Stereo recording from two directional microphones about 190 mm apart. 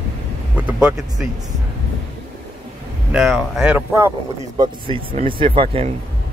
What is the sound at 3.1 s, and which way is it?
Speech, centre (ahead or behind).